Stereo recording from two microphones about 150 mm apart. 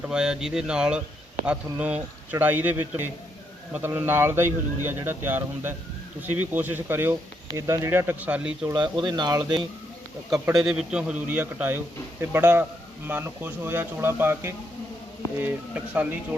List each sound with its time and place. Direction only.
0.1 s speech: 5° right (ahead or behind)
8.7 s speech: 30° right (ahead or behind)
10.5 s speech: 5° right (ahead or behind)